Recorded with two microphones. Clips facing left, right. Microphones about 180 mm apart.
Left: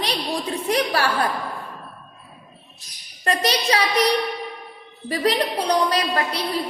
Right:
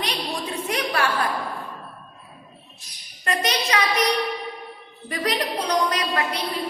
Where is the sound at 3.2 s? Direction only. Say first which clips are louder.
Left 3 dB; 35° left (ahead or behind).